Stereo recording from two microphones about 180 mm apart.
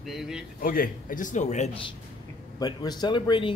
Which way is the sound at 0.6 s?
50° left (ahead or behind).